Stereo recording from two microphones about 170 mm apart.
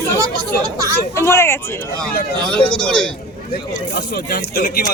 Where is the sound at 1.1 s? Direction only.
15° left (ahead or behind).